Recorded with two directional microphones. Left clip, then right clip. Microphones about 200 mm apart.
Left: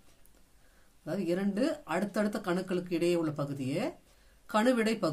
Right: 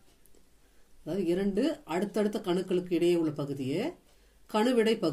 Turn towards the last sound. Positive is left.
turn(degrees=25)  # may be behind; listen again after turning